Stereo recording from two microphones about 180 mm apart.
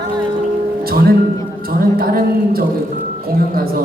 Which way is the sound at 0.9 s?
55° right (ahead or behind).